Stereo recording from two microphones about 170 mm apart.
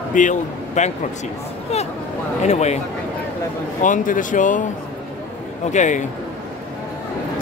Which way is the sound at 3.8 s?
50° left (ahead or behind).